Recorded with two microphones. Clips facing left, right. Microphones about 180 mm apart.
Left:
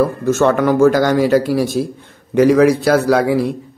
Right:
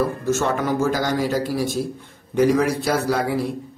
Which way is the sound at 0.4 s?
70° left (ahead or behind).